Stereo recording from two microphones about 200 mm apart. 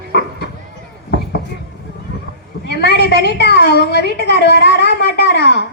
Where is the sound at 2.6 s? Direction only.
55° left (ahead or behind).